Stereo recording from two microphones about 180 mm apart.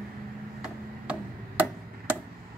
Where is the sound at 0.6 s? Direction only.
10° right (ahead or behind).